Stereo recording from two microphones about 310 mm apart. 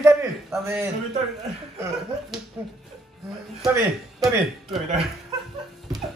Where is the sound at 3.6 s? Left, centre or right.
Centre.